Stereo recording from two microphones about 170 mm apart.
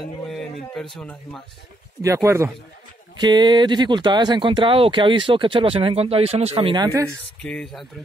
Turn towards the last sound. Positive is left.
turn(degrees=5)  # may be behind; listen again after turning